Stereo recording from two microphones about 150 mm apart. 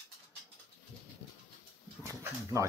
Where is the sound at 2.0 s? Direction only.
20° right (ahead or behind).